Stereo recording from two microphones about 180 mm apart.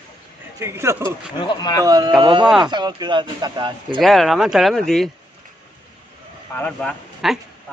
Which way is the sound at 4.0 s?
Centre (ahead or behind).